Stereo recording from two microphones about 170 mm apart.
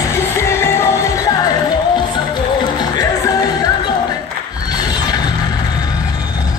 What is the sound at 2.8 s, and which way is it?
Music, 20° left (ahead or behind).